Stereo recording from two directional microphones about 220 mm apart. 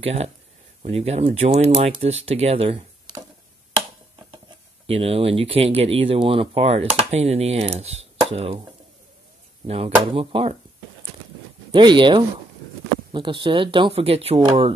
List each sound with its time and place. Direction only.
0.0 s speech: 30° right (ahead or behind)
3.7 s a sound: 20° right (ahead or behind)
4.8 s speech: 25° right (ahead or behind)
9.7 s speech: 25° right (ahead or behind)
11.7 s speech: 20° right (ahead or behind)